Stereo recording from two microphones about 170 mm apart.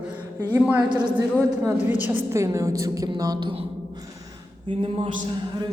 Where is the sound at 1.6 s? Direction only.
10° right (ahead or behind).